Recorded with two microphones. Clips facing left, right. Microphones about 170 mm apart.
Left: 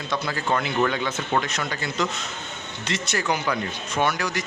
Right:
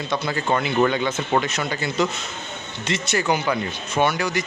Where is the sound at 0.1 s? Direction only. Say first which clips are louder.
Right 2 dB; centre (ahead or behind).